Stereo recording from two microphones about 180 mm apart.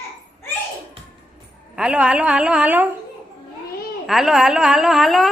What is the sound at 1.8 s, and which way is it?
A woman's voice, 5° right (ahead or behind).